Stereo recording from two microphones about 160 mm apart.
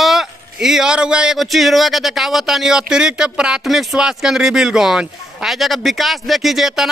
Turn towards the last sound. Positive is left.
turn(degrees=0)  # may be behind; listen again after turning